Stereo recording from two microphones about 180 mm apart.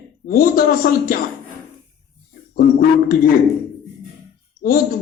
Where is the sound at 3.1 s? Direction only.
50° left (ahead or behind).